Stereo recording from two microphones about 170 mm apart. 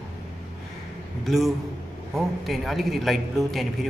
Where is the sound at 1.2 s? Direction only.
Centre (ahead or behind).